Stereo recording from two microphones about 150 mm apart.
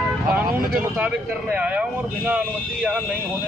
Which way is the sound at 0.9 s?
10° right (ahead or behind).